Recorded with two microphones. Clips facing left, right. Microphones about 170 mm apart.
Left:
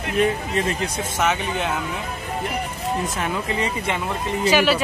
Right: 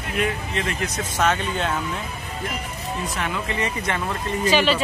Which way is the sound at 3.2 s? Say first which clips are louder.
Left 2 dB; 30° left (ahead or behind).